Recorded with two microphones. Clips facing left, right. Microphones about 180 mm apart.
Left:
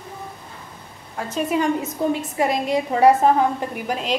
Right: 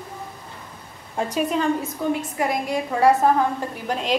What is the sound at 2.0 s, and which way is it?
A woman's voice, 30° left (ahead or behind).